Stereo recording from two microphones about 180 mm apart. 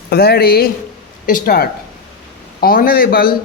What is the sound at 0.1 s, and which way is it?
A man's voice, 60° left (ahead or behind).